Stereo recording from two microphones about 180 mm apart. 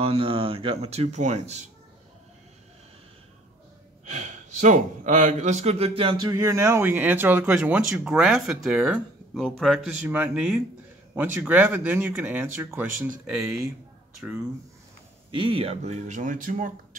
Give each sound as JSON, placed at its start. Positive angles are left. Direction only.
{"t": 0.0, "sound": "speech", "side_deg": -30}
{"t": 4.1, "sound": "speech", "side_deg": -40}
{"t": 6.2, "sound": "speech", "side_deg": -15}
{"t": 15.3, "sound": "speech", "side_deg": -30}